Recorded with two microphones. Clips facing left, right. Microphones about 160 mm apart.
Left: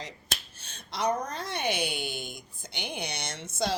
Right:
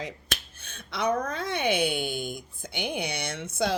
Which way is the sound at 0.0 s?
55° right (ahead or behind).